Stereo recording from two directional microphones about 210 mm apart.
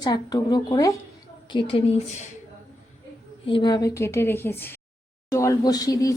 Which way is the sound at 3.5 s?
20° left (ahead or behind).